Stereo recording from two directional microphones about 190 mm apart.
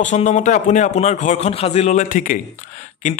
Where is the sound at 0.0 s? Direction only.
40° left (ahead or behind).